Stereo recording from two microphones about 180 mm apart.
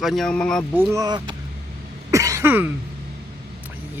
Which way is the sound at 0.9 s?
20° right (ahead or behind).